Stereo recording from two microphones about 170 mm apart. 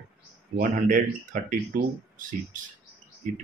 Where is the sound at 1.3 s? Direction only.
50° right (ahead or behind).